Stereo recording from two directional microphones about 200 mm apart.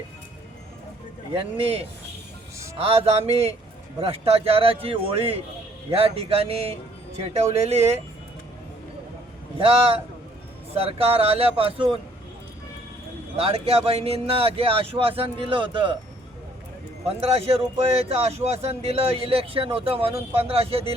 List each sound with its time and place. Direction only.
1.4 s speech: 30° right (ahead or behind)
9.6 s speech: 30° right (ahead or behind)
13.3 s speech: 30° right (ahead or behind)
17.1 s speech: 30° right (ahead or behind)